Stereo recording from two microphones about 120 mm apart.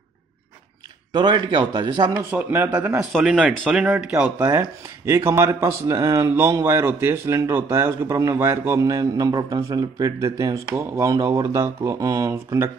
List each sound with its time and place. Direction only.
1.1 s a man's voice: 40° right (ahead or behind)
2.0 s speech: 20° right (ahead or behind)
3.0 s speech: centre (ahead or behind)
3.4 s speech: 10° right (ahead or behind)
4.4 s speech: 25° right (ahead or behind)